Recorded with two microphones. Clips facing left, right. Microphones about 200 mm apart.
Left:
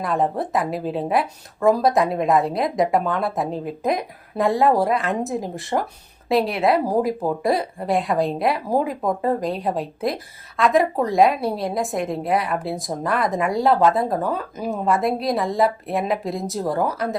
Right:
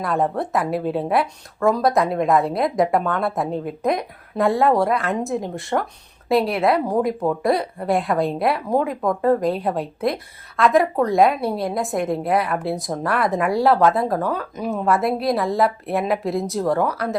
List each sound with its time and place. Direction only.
0.0 s speech: centre (ahead or behind)
6.7 s speech: 35° left (ahead or behind)
7.4 s speech: centre (ahead or behind)
9.0 s speech: 20° left (ahead or behind)
9.4 s speech: centre (ahead or behind)